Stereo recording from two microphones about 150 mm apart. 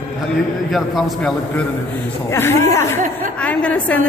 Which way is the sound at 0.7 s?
Centre (ahead or behind).